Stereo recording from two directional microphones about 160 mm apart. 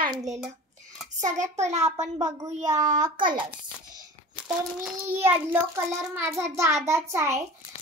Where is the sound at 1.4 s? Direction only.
45° right (ahead or behind).